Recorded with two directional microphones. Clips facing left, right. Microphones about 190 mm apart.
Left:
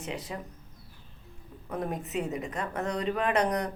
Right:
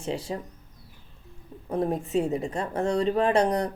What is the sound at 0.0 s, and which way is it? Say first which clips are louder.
Speech: right 6 dB; 30° right (ahead or behind).